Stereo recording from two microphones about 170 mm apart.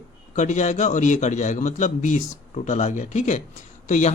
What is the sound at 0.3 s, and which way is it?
Speech, 45° left (ahead or behind).